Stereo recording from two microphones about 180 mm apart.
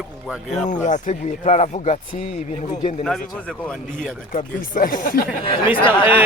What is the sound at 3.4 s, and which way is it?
Speech, 5° left (ahead or behind).